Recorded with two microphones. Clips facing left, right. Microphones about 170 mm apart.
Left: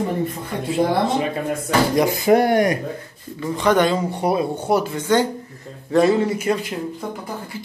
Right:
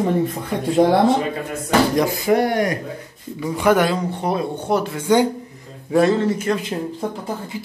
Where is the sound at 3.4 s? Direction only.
10° right (ahead or behind).